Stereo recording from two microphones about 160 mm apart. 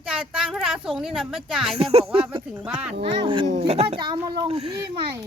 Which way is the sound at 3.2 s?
30° right (ahead or behind).